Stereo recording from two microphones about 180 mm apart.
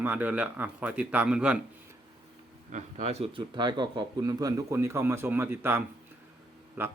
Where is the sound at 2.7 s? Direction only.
35° right (ahead or behind).